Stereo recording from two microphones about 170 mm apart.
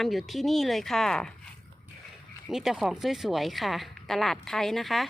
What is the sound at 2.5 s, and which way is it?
Speech, centre (ahead or behind).